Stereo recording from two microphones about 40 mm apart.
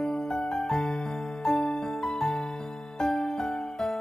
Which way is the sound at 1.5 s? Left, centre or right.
Left.